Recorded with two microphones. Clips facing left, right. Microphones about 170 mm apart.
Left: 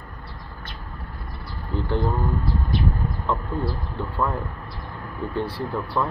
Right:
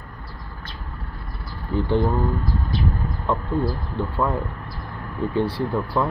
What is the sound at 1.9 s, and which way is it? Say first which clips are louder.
Speech: right 3 dB; 20° right (ahead or behind).